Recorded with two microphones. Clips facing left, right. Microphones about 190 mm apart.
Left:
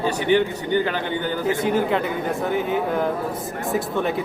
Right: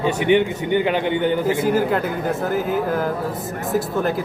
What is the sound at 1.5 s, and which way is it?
Speech, centre (ahead or behind).